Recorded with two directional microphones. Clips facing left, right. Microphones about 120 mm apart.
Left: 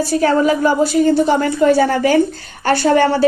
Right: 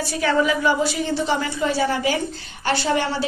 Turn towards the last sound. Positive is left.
turn(degrees=50)  # may be behind; listen again after turning